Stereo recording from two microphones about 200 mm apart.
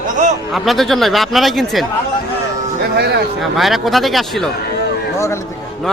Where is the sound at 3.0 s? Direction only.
55° right (ahead or behind).